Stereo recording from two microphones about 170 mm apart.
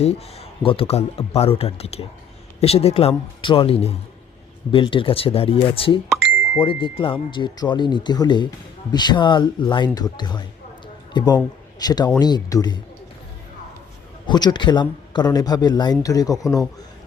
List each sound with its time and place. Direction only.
0.0 s a man's voice: 35° left (ahead or behind)
14.3 s speech: 25° left (ahead or behind)